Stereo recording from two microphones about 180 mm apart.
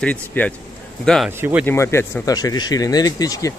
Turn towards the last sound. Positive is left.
turn(degrees=20)  # may be behind; listen again after turning